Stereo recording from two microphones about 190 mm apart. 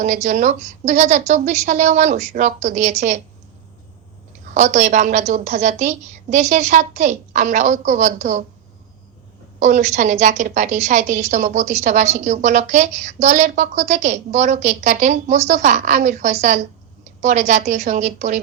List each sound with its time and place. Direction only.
0.0 s a woman's voice: 40° right (ahead or behind)
4.5 s a woman's voice: 40° right (ahead or behind)
9.6 s a woman's voice: 40° right (ahead or behind)